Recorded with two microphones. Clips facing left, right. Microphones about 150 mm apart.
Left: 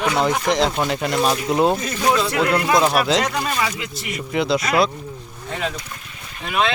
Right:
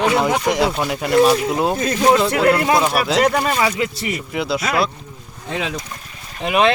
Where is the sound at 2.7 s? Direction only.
5° right (ahead or behind).